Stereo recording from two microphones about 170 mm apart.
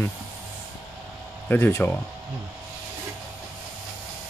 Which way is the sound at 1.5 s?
10° left (ahead or behind).